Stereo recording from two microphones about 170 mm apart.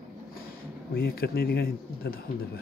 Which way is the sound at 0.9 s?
60° left (ahead or behind).